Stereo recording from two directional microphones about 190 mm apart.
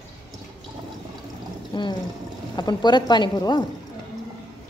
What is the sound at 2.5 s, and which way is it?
A woman's voice, 20° left (ahead or behind).